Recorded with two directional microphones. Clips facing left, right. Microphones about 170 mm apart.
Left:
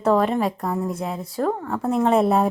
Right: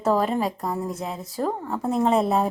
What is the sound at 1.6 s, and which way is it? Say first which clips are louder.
Speech: left 2 dB; 15° right (ahead or behind).